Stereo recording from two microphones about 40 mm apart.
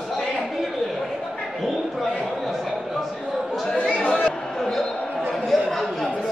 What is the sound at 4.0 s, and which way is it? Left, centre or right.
Chatter, left.